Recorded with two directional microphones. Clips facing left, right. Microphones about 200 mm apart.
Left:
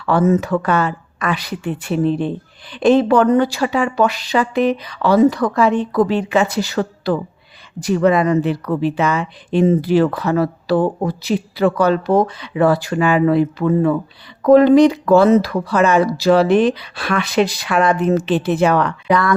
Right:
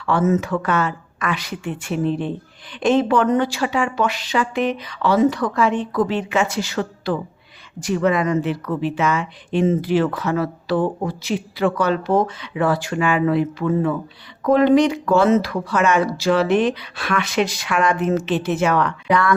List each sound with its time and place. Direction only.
0.0 s a woman's voice: 35° left (ahead or behind)